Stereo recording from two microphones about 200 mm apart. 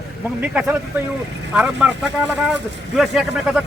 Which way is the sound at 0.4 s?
5° right (ahead or behind).